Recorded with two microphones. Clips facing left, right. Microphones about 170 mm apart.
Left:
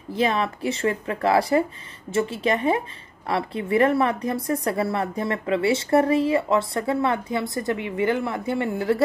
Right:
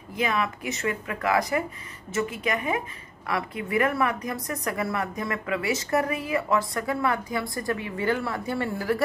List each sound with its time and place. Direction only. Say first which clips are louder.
0.1 s speech: left 4 dB; 30° left (ahead or behind)